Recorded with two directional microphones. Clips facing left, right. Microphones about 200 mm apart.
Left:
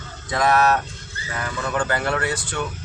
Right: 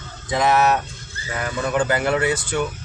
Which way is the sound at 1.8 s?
20° right (ahead or behind).